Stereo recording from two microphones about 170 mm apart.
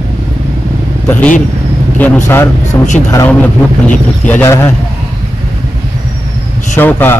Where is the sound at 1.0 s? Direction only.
10° left (ahead or behind).